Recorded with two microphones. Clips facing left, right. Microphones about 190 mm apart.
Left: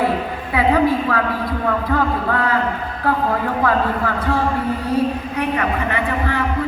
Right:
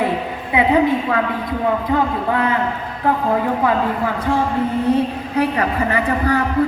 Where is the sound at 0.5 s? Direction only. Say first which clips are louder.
Right 1 dB; 20° right (ahead or behind).